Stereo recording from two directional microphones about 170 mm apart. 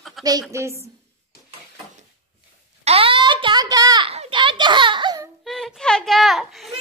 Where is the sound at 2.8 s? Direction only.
35° right (ahead or behind).